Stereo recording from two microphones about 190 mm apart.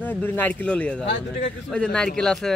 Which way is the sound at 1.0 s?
60° left (ahead or behind).